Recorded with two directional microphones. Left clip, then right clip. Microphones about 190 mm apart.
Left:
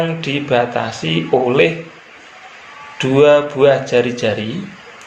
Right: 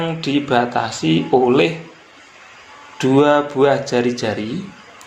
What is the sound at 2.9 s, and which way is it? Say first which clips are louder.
Speech: left 3 dB; 35° right (ahead or behind).